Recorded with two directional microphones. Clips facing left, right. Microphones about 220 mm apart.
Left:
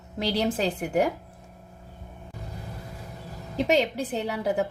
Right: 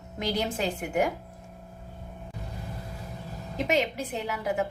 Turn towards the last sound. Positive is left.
turn(degrees=35)  # may be behind; listen again after turning